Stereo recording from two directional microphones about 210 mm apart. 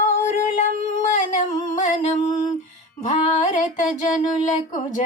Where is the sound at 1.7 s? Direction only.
35° left (ahead or behind).